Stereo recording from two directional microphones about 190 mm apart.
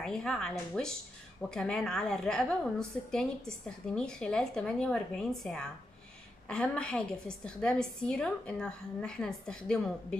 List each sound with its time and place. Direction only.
0.0 s a woman's voice: 5° left (ahead or behind)